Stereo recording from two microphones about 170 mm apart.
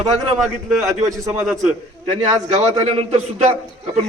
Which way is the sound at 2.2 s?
45° right (ahead or behind).